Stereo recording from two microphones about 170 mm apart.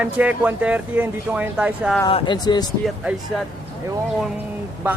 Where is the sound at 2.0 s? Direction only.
30° left (ahead or behind).